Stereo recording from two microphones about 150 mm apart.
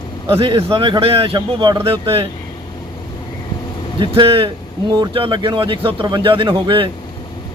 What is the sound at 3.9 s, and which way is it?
Speech, 35° right (ahead or behind).